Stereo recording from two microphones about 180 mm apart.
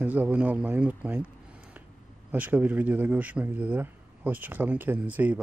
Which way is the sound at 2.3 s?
10° right (ahead or behind).